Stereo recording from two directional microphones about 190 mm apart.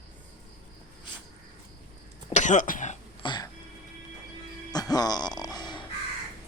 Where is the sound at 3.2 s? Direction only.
25° left (ahead or behind).